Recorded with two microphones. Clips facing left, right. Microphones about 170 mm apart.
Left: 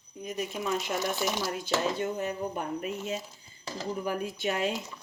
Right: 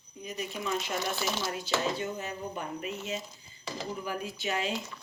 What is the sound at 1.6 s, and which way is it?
Speech, 50° left (ahead or behind).